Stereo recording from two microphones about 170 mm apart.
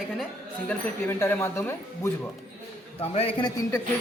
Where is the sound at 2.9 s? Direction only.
35° left (ahead or behind).